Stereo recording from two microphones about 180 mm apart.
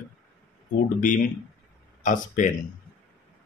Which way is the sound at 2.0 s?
45° left (ahead or behind).